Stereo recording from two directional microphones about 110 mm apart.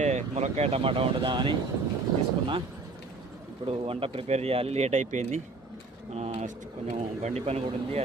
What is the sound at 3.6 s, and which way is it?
Speech, 55° right (ahead or behind).